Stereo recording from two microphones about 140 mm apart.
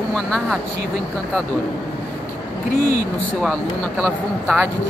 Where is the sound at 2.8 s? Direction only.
90° right.